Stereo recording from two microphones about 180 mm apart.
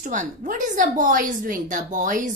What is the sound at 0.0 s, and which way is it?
A woman's voice, 45° right (ahead or behind).